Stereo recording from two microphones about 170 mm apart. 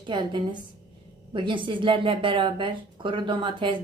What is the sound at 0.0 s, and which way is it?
A woman's voice, 25° right (ahead or behind).